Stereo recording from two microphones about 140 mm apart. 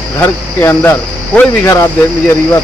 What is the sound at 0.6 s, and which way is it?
Speech, 15° left (ahead or behind).